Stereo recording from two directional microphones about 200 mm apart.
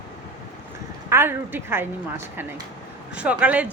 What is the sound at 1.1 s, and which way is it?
A woman's voice, 10° right (ahead or behind).